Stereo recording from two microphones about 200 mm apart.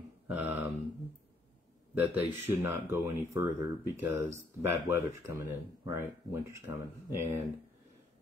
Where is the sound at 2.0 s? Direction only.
10° right (ahead or behind).